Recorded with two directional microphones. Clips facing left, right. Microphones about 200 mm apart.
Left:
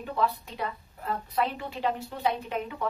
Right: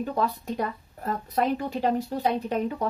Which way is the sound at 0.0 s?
40° right (ahead or behind).